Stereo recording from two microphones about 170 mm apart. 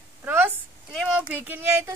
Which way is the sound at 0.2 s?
10° right (ahead or behind).